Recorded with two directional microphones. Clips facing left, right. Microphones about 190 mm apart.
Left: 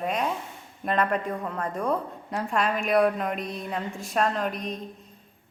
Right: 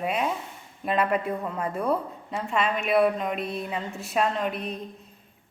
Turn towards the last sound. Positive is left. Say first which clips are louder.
# even
turn(degrees=-5)  # may be behind; listen again after turning